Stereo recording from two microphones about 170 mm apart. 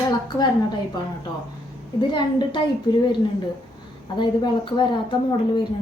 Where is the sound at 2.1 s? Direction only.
30° left (ahead or behind).